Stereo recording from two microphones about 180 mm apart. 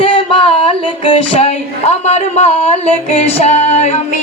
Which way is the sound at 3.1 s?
35° left (ahead or behind).